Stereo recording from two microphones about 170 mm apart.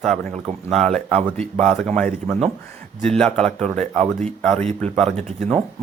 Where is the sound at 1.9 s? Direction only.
5° left (ahead or behind).